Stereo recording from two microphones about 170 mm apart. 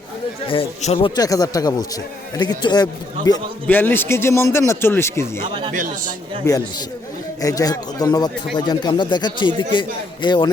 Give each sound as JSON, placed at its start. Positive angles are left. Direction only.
{"t": 0.4, "sound": "speech", "side_deg": 30}
{"t": 1.1, "sound": "a man's voice", "side_deg": 20}
{"t": 3.7, "sound": "a man's voice", "side_deg": 10}
{"t": 5.7, "sound": "speech", "side_deg": -50}
{"t": 6.4, "sound": "a man's voice", "side_deg": 20}